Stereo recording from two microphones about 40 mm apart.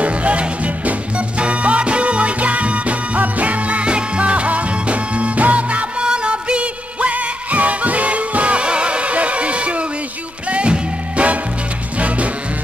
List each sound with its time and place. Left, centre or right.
0.0 s music: right